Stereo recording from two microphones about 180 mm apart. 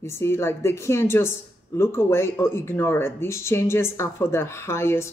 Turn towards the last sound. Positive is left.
turn(degrees=15)  # may be behind; listen again after turning